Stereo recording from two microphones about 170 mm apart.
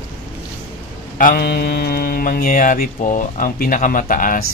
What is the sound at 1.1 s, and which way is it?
Mantra, 60° left (ahead or behind).